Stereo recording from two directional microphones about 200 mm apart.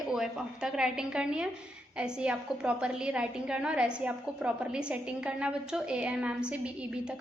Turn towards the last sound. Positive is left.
turn(degrees=-5)  # may be behind; listen again after turning